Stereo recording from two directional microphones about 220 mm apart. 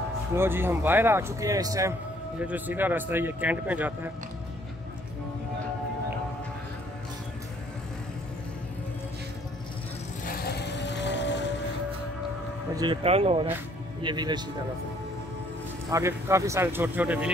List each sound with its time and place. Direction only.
0.4 s a man's voice: 10° right (ahead or behind)
10.2 s vehicle: 45° left (ahead or behind)
12.7 s speech: 20° right (ahead or behind)
15.9 s a man's voice: 10° right (ahead or behind)